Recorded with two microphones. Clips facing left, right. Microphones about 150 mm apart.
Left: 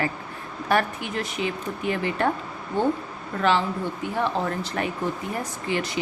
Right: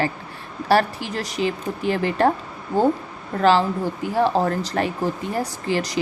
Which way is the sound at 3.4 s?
35° right (ahead or behind).